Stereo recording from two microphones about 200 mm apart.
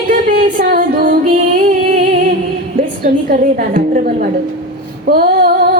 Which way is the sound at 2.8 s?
45° right (ahead or behind).